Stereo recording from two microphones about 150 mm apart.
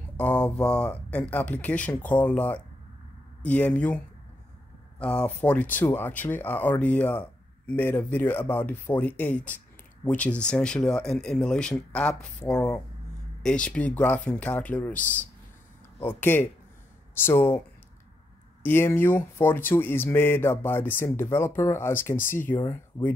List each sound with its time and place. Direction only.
0.2 s speech: 10° left (ahead or behind)
18.6 s speech: 15° left (ahead or behind)